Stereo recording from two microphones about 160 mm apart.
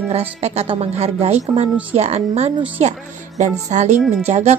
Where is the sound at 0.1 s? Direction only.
40° right (ahead or behind).